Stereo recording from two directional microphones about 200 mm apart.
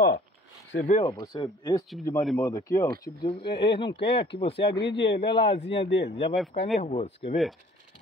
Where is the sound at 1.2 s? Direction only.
20° left (ahead or behind).